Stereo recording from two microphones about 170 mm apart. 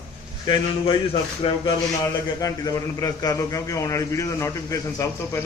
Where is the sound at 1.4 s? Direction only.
35° left (ahead or behind).